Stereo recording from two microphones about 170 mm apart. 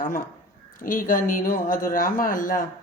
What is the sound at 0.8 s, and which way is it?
Speech, 55° left (ahead or behind).